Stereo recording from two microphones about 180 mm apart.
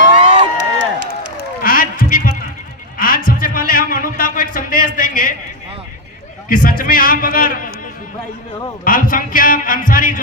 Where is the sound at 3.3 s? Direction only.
50° left (ahead or behind).